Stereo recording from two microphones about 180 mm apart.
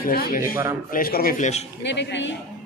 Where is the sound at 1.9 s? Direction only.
80° left.